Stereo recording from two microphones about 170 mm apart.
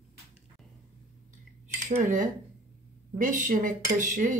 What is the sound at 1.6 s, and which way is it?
Cutlery, 45° right (ahead or behind).